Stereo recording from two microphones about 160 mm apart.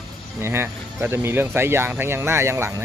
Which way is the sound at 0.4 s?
15° right (ahead or behind).